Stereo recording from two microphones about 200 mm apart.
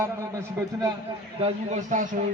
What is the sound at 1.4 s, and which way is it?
Speech, 35° right (ahead or behind).